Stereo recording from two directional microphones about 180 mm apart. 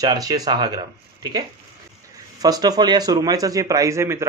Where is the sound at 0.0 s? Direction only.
20° right (ahead or behind).